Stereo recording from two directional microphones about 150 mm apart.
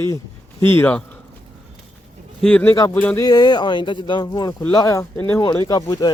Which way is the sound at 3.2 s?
25° left (ahead or behind).